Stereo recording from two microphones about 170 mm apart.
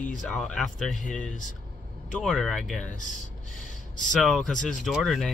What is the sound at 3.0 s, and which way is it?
Speech, 50° left (ahead or behind).